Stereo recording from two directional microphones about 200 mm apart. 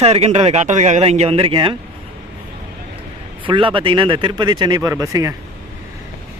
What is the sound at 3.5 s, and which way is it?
Speech, 25° right (ahead or behind).